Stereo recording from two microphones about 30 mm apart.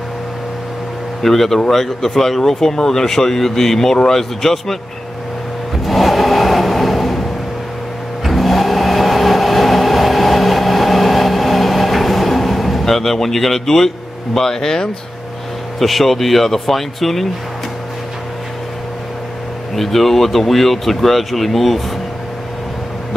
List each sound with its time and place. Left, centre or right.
1.2 s speech: centre
5.9 s vehicle: centre
15.8 s speech: centre
19.7 s speech: centre